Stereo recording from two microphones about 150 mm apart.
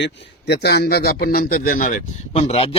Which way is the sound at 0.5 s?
90° left.